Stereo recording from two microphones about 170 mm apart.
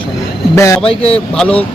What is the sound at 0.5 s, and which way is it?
Speech, 15° left (ahead or behind).